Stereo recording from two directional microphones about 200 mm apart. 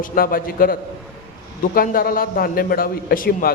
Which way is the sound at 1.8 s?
45° left (ahead or behind).